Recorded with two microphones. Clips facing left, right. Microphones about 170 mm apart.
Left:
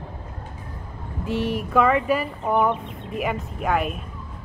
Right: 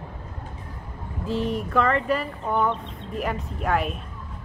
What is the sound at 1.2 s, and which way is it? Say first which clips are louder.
Speech: left 1 dB; 75° left (ahead or behind).